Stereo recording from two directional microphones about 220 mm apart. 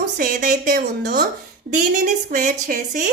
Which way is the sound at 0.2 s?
40° right (ahead or behind).